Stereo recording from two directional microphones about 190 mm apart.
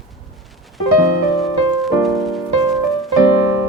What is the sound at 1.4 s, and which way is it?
Music, centre (ahead or behind).